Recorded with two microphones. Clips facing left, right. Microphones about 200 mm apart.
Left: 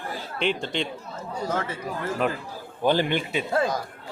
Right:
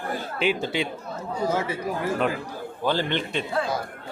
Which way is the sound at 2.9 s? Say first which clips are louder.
Left 3 dB; 15° left (ahead or behind).